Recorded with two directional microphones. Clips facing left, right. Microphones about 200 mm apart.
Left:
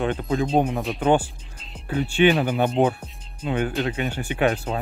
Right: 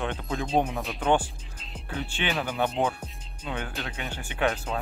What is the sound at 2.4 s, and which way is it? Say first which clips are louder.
Speech: left 6 dB; 25° left (ahead or behind).